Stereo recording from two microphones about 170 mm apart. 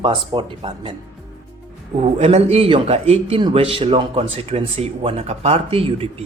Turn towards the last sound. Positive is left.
turn(degrees=-35)  # may be behind; listen again after turning